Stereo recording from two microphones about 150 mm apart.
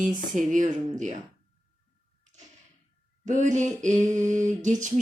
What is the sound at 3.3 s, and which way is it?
Speech, 55° right (ahead or behind).